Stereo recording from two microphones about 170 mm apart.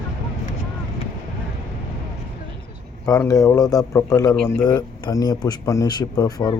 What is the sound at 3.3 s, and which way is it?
Speech, 20° left (ahead or behind).